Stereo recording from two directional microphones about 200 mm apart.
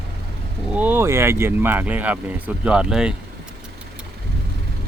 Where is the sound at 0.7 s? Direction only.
10° right (ahead or behind).